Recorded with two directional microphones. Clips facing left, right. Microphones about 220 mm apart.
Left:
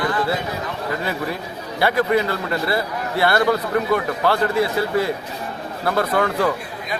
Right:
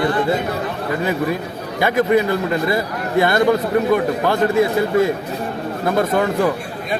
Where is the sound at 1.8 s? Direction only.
15° right (ahead or behind).